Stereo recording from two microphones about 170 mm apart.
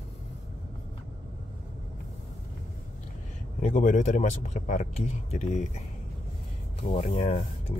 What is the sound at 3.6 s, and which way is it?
Speech, 45° left (ahead or behind).